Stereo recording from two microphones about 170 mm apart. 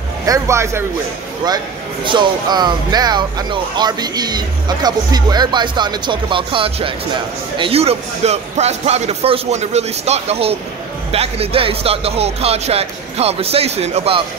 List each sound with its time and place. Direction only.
0.3 s speech: 15° right (ahead or behind)
2.0 s speech: 25° right (ahead or behind)